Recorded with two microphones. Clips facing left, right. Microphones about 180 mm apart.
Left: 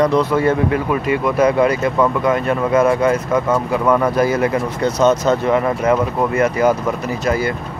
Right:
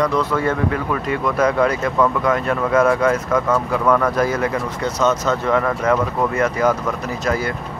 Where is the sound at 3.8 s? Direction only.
20° left (ahead or behind).